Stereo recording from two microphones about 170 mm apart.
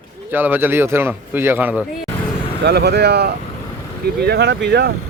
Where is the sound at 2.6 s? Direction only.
75° right (ahead or behind).